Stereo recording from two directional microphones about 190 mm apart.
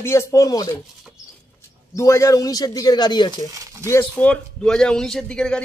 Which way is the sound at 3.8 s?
10° left (ahead or behind).